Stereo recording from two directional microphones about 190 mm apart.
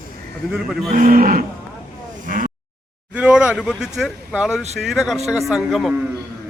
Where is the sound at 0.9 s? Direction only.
45° right (ahead or behind).